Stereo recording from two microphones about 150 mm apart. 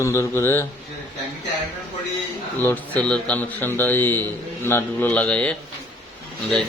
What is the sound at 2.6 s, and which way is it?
A man's voice, 10° left (ahead or behind).